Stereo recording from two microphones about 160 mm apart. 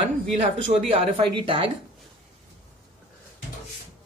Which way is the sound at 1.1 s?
35° right (ahead or behind).